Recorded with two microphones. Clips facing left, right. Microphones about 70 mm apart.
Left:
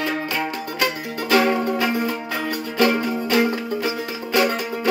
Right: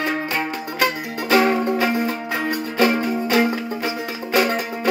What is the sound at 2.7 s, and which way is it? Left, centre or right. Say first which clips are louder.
Music: even; centre.